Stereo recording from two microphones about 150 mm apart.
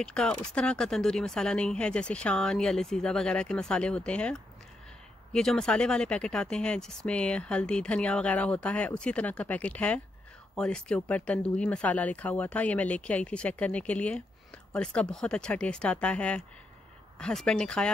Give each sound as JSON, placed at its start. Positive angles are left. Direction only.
{"t": 0.0, "sound": "speech", "side_deg": 5}